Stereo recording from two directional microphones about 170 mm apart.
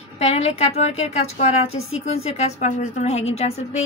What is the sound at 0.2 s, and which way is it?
A woman's voice, 40° left (ahead or behind).